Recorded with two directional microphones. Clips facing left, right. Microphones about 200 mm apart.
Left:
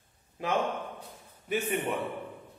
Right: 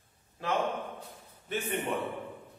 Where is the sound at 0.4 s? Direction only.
15° left (ahead or behind).